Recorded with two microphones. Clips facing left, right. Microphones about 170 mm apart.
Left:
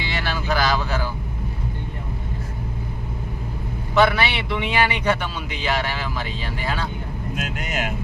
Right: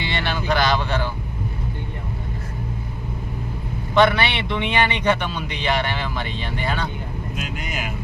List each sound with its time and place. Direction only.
0.0 s vehicle: 5° left (ahead or behind)
3.9 s a man's voice: 5° left (ahead or behind)
7.3 s speech: 70° left (ahead or behind)